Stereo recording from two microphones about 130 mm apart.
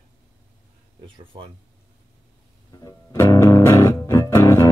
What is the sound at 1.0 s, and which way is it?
Speech, 40° right (ahead or behind).